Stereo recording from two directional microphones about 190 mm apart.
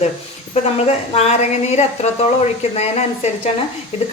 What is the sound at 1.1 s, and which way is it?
A woman's voice, 35° left (ahead or behind).